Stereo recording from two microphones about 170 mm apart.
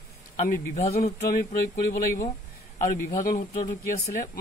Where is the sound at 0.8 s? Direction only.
40° left (ahead or behind).